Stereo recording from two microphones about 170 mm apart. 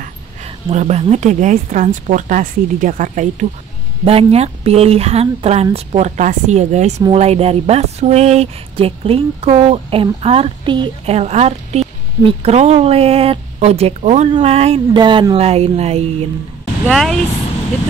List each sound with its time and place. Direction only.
0.7 s speech: 40° right (ahead or behind)
4.0 s speech: 35° right (ahead or behind)
15.0 s speech: 25° right (ahead or behind)
16.8 s speech: 5° left (ahead or behind)